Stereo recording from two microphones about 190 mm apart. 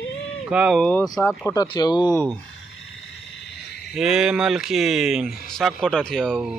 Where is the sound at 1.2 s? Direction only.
15° left (ahead or behind).